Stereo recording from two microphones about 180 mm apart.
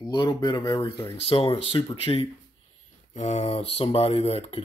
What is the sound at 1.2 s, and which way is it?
Speech, 35° left (ahead or behind).